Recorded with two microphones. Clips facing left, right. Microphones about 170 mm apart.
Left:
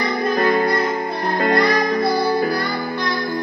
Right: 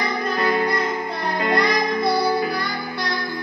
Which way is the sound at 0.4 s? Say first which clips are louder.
Left 3 dB; 45° left (ahead or behind).